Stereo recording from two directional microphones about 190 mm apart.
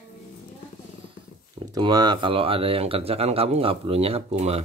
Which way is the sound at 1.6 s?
20° right (ahead or behind).